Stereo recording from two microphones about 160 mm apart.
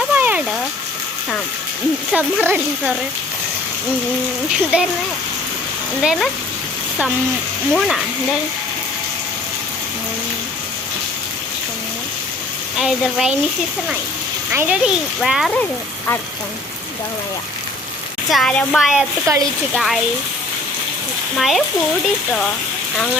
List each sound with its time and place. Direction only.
0.1 s a sound: 10° right (ahead or behind)
2.1 s speech: 10° right (ahead or behind)
4.5 s a child's voice: 5° right (ahead or behind)
6.0 s a child's voice: centre (ahead or behind)
7.7 s a child's voice: centre (ahead or behind)
12.8 s a child's voice: centre (ahead or behind)
14.5 s a child's voice: 10° right (ahead or behind)
18.3 s a child's voice: 5° left (ahead or behind)
21.3 s a child's voice: centre (ahead or behind)